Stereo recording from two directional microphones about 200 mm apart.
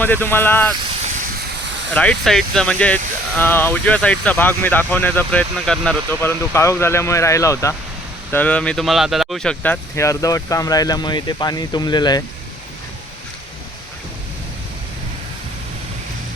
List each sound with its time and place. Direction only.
0.0 s speech: 10° left (ahead or behind)
1.9 s speech: 5° left (ahead or behind); by 12.2 s 20° left (ahead or behind)